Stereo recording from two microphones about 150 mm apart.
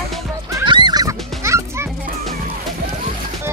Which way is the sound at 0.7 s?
30° right (ahead or behind).